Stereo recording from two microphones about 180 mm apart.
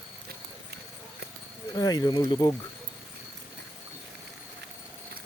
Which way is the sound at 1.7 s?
20° left (ahead or behind).